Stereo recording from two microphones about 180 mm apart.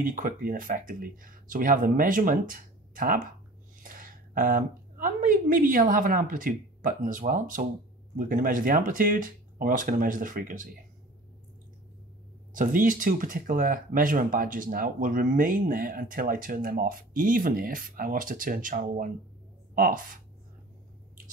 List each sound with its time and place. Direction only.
0.0 s a woman's voice: 50° right (ahead or behind)
12.5 s speech: 50° right (ahead or behind)